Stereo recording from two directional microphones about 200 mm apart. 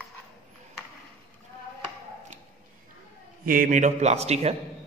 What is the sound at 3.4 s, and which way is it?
A man's voice, 45° right (ahead or behind).